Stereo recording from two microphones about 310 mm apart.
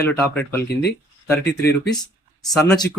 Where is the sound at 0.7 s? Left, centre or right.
Left.